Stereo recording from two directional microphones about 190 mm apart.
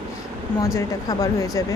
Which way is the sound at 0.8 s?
15° left (ahead or behind).